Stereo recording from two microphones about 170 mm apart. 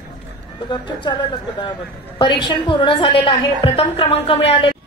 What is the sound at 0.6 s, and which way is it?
A woman's voice, 30° left (ahead or behind).